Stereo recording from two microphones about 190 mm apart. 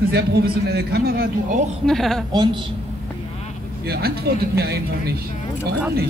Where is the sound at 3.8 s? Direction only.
55° right (ahead or behind).